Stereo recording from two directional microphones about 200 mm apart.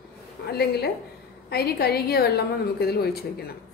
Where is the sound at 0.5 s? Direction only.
55° left (ahead or behind).